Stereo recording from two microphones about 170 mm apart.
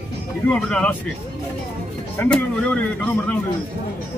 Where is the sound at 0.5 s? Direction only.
5° left (ahead or behind).